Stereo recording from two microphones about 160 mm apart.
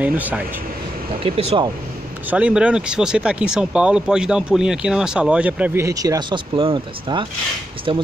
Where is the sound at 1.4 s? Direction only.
40° right (ahead or behind).